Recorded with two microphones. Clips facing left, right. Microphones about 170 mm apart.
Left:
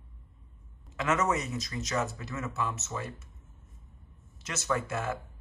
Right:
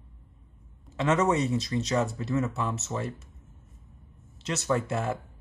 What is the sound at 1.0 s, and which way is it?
Speech, 30° right (ahead or behind).